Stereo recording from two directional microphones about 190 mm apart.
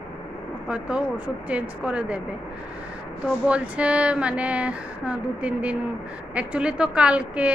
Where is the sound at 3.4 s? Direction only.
5° right (ahead or behind).